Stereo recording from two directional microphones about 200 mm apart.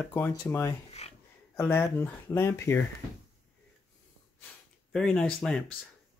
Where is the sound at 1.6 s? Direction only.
10° left (ahead or behind).